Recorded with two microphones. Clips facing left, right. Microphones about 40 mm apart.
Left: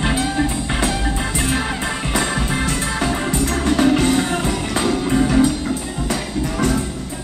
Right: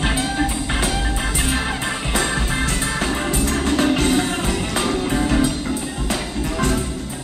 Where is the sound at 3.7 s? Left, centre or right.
Right.